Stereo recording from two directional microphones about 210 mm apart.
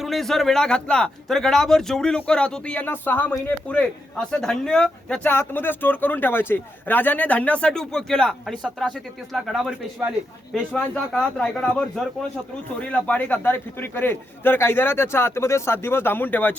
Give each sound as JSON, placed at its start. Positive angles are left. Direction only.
{"t": 0.0, "sound": "a man's voice", "side_deg": 0}